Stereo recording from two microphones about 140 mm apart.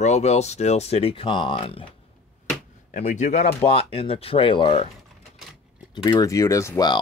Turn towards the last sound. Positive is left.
turn(degrees=30)  # may be behind; listen again after turning